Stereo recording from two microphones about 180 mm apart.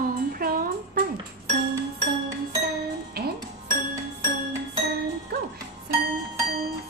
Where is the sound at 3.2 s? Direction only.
60° right (ahead or behind).